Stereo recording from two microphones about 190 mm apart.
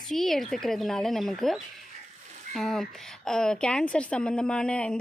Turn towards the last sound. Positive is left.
turn(degrees=5)  # may be behind; listen again after turning